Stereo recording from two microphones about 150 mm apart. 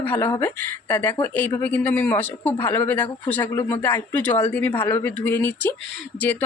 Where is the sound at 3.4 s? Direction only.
30° left (ahead or behind).